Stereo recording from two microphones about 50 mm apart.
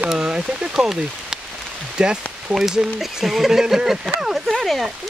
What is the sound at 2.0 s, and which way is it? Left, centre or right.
Rain on surface, centre.